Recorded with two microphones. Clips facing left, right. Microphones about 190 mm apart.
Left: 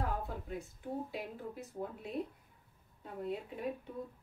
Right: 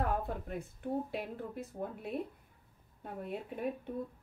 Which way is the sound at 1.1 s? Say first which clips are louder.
Right 3 dB; 55° right (ahead or behind).